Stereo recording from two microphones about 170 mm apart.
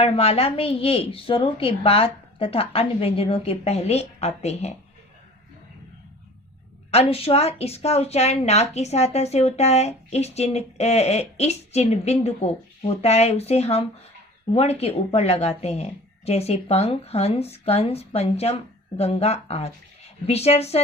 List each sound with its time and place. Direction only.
0.0 s a woman's voice: 35° left (ahead or behind)
6.9 s a woman's voice: 35° left (ahead or behind)